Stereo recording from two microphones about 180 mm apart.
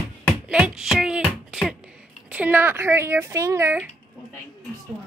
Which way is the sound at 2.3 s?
10° right (ahead or behind).